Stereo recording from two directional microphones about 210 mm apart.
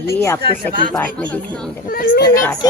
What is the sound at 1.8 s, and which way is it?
Speech, 45° left (ahead or behind).